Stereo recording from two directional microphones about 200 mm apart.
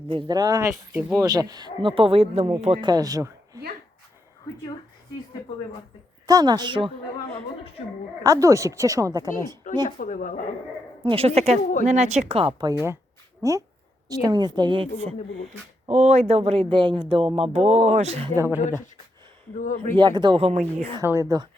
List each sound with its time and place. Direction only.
0.1 s speech: 20° right (ahead or behind)
0.7 s speech: centre (ahead or behind)
1.2 s speech: 20° right (ahead or behind)
6.2 s speech: 20° right (ahead or behind)
8.2 s a woman's voice: 15° right (ahead or behind)
10.0 s speech: 40° left (ahead or behind)
11.0 s a woman's voice: 30° right (ahead or behind)
15.9 s speech: 35° right (ahead or behind)
18.3 s a woman's voice: 10° right (ahead or behind)
19.5 s speech: 40° left (ahead or behind)
20.0 s speech: 20° right (ahead or behind)
21.0 s a woman's voice: 15° right (ahead or behind)